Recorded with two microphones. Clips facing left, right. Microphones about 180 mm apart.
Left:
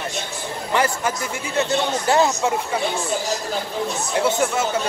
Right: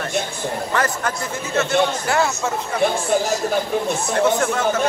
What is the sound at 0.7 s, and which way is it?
Speech, 10° left (ahead or behind).